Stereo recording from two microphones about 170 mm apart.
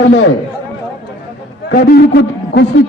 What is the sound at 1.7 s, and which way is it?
Speech, 65° left (ahead or behind).